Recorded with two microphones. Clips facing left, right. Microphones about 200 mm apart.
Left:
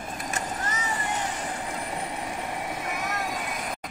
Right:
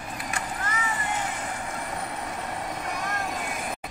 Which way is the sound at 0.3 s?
40° left (ahead or behind).